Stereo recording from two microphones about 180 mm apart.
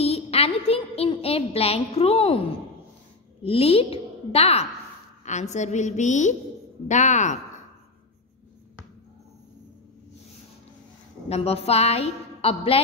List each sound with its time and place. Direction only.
0.0 s a sound: 35° left (ahead or behind)
3.4 s a woman's voice: 30° left (ahead or behind)
11.2 s a woman's voice: 35° left (ahead or behind)